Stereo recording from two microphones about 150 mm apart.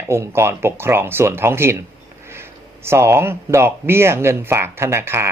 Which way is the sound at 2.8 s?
15° right (ahead or behind).